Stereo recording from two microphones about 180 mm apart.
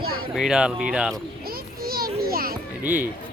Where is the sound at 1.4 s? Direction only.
55° right (ahead or behind).